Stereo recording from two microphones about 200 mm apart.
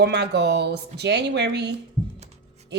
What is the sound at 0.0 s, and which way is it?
A woman's voice, 55° right (ahead or behind).